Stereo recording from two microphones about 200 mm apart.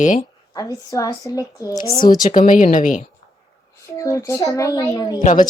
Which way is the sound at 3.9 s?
15° left (ahead or behind).